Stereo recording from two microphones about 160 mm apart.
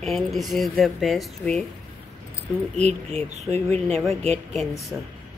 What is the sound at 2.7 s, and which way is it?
Speech, 45° right (ahead or behind).